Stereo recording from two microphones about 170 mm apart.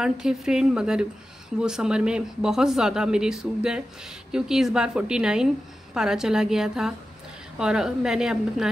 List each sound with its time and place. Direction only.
0.0 s speech: 5° right (ahead or behind)